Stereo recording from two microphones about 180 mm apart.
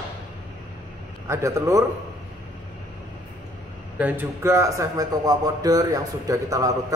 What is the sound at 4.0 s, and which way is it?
Speech, 15° right (ahead or behind).